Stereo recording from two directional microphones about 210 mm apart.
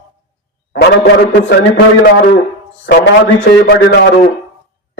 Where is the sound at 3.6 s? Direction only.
50° left (ahead or behind).